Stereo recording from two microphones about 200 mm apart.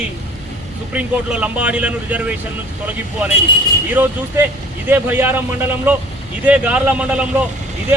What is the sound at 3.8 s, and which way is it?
Speech, 10° right (ahead or behind).